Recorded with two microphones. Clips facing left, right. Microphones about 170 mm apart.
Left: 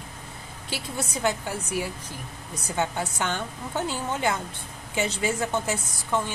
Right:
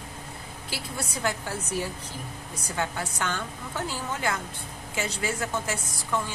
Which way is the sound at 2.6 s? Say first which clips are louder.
Left 3 dB; 20° left (ahead or behind).